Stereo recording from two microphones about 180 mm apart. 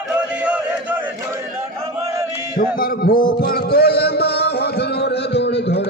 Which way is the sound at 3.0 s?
55° left (ahead or behind).